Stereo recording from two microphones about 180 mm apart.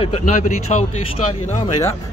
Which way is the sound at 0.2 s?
40° left (ahead or behind).